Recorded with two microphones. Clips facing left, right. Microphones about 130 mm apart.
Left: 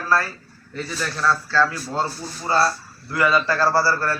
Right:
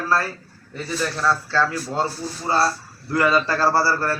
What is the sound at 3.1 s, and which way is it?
A man's voice, 35° right (ahead or behind).